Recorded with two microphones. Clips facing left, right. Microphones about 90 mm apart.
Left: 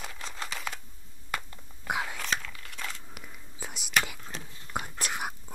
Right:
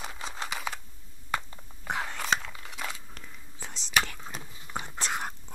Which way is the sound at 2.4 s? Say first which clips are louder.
Right 2 dB; 25° right (ahead or behind).